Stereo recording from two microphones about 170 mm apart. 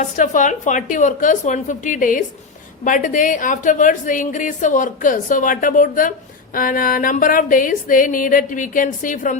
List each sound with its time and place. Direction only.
0.0 s a woman's voice: 50° left (ahead or behind)